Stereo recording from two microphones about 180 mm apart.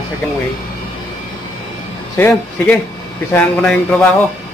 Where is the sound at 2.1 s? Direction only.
10° left (ahead or behind).